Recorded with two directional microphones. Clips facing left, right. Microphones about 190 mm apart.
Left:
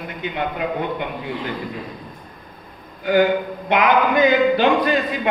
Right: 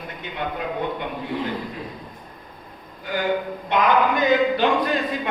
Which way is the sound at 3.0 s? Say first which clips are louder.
Left 7 dB; 90° left.